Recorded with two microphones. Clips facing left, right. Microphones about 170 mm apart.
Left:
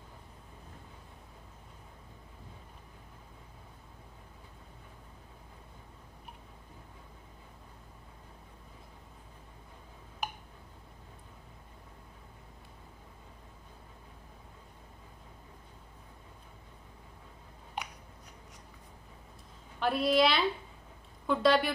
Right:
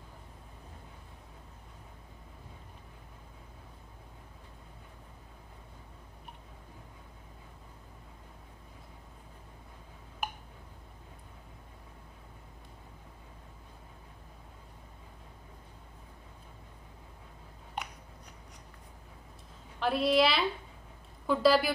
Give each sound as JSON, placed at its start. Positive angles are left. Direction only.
{"t": 17.8, "sound": "biting", "side_deg": 0}
{"t": 19.8, "sound": "a woman's voice", "side_deg": 0}